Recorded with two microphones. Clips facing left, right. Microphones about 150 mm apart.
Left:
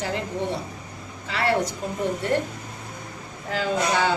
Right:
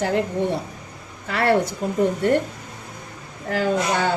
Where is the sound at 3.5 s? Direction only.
50° right (ahead or behind).